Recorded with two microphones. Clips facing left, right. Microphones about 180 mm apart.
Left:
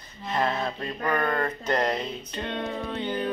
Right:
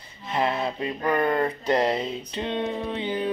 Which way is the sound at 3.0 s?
5° right (ahead or behind).